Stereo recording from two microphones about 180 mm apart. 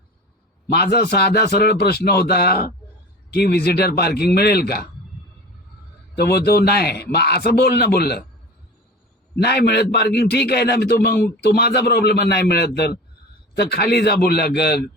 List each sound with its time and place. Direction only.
0.7 s a man's voice: 60° left (ahead or behind)
6.1 s a man's voice: 65° left (ahead or behind)
9.3 s a man's voice: 60° left (ahead or behind)